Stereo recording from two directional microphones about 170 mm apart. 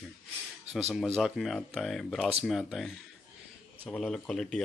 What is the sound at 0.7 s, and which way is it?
Speech, 40° right (ahead or behind).